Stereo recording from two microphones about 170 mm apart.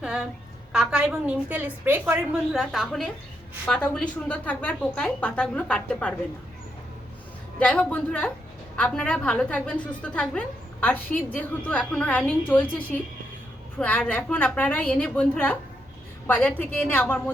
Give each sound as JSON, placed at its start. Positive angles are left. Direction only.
{"t": 0.0, "sound": "a sound", "side_deg": -5}
{"t": 0.7, "sound": "a woman's voice", "side_deg": -5}
{"t": 7.6, "sound": "a woman's voice", "side_deg": 5}